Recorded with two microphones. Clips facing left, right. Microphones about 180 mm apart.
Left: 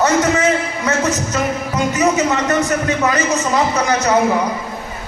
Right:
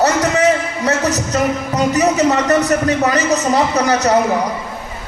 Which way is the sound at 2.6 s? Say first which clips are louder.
Right 2 dB; 40° right (ahead or behind).